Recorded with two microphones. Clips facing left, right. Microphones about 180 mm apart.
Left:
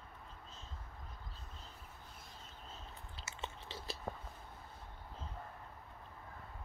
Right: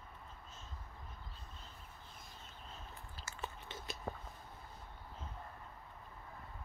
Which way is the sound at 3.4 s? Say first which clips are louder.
Even; 30° left (ahead or behind).